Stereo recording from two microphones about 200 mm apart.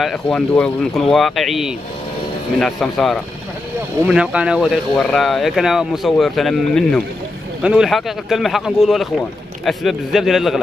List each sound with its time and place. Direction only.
0.0 s speech: 5° left (ahead or behind)